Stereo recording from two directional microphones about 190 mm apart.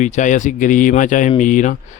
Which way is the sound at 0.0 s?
40° left (ahead or behind).